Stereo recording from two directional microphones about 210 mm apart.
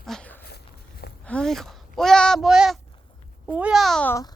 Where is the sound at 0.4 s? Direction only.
50° left (ahead or behind).